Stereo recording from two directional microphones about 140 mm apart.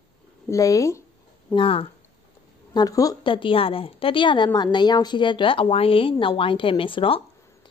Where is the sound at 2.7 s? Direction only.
25° left (ahead or behind).